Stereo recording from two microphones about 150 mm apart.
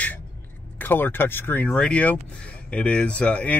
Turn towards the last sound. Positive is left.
turn(degrees=10)  # may be behind; listen again after turning